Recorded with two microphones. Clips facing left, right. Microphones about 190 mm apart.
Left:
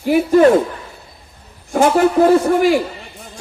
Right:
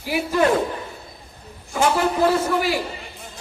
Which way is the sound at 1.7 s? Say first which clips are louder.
Left 7 dB; 50° left (ahead or behind).